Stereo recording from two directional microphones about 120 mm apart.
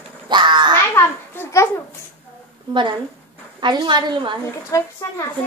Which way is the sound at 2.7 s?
40° right (ahead or behind).